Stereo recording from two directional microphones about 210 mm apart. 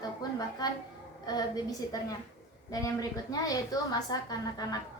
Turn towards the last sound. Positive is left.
turn(degrees=20)  # may be behind; listen again after turning